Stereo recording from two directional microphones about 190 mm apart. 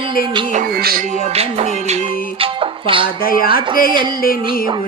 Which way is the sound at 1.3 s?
35° right (ahead or behind).